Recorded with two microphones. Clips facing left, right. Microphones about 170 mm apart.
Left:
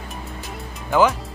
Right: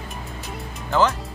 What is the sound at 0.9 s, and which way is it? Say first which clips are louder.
Speech: left 3 dB; 10° left (ahead or behind).